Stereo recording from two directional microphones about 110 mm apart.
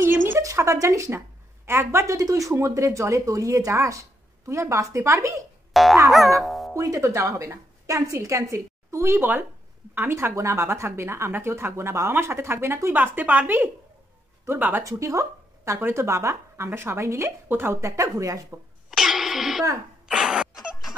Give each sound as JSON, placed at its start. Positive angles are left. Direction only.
{"t": 0.4, "sound": "speech", "side_deg": -30}
{"t": 5.7, "sound": "boing", "side_deg": 0}
{"t": 6.4, "sound": "speech", "side_deg": 0}
{"t": 6.7, "sound": "speech", "side_deg": -30}
{"t": 18.9, "sound": "music", "side_deg": -5}
{"t": 20.1, "sound": "a sound", "side_deg": -5}